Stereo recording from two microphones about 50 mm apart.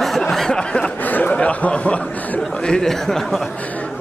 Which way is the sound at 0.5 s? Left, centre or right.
Centre.